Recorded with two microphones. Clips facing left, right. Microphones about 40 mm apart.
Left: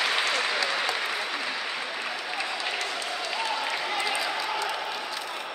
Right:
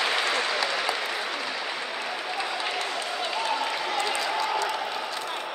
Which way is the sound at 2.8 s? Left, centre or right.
Right.